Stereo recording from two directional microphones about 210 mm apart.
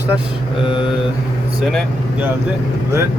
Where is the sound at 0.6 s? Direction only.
25° left (ahead or behind).